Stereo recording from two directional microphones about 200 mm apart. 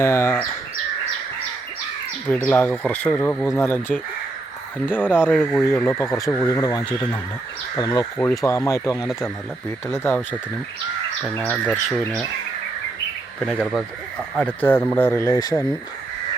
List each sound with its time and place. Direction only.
0.0 s speech: 15° left (ahead or behind)
2.5 s speech: 10° left (ahead or behind)
11.2 s speech: centre (ahead or behind)
13.4 s speech: centre (ahead or behind)
14.6 s speech: 10° left (ahead or behind)